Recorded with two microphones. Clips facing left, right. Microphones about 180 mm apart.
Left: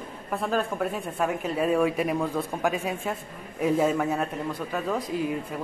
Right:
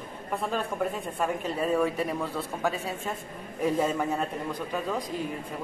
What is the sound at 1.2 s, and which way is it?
Speech, 10° left (ahead or behind).